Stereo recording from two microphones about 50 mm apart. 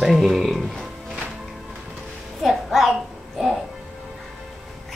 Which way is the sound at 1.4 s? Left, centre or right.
Centre.